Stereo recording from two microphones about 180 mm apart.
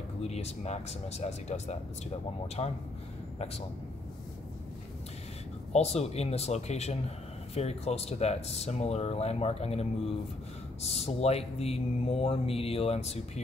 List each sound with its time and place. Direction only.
0.2 s speech: 35° left (ahead or behind)
5.7 s speech: 35° left (ahead or behind)